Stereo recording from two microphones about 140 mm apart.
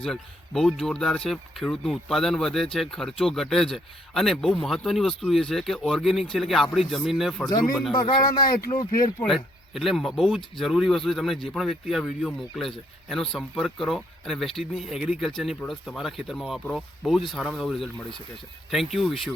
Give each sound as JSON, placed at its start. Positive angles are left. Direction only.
{"t": 0.0, "sound": "speech", "side_deg": 5}
{"t": 8.7, "sound": "speech", "side_deg": 25}
{"t": 9.2, "sound": "speech", "side_deg": 0}